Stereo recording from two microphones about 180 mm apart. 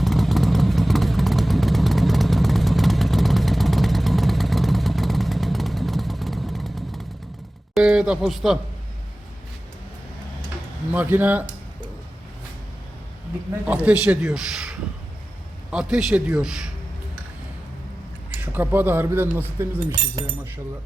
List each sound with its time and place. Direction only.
0.0 s vehicle: centre (ahead or behind)
7.7 s speech: 5° right (ahead or behind)
10.9 s speech: 10° right (ahead or behind)
13.7 s a man's voice: 5° right (ahead or behind)
18.3 s speech: 10° right (ahead or behind)
19.9 s speech: 30° right (ahead or behind)